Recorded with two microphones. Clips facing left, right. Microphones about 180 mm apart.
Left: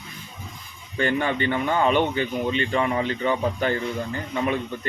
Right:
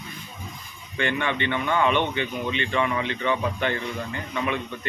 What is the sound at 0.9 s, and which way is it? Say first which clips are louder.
Speech: left 3 dB; 40° left (ahead or behind).